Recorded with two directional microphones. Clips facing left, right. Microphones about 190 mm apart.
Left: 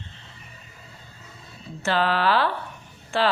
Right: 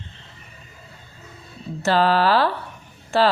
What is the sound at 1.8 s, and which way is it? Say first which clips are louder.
A woman's voice: right 5 dB; 35° right (ahead or behind).